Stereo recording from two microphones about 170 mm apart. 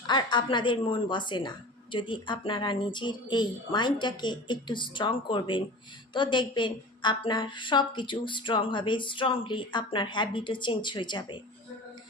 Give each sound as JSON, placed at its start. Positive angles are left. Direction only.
{"t": 0.1, "sound": "a woman's voice", "side_deg": 25}